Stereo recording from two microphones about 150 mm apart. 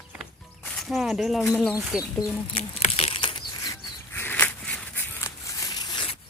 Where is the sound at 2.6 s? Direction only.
40° left (ahead or behind).